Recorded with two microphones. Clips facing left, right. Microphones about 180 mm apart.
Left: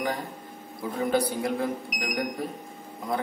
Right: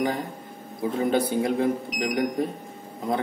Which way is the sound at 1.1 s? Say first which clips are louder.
Right 1 dB; 25° right (ahead or behind).